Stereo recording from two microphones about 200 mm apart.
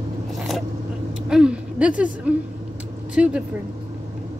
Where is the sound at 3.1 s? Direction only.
5° right (ahead or behind).